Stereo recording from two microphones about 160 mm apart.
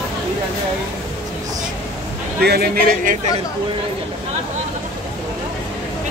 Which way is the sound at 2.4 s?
80° right.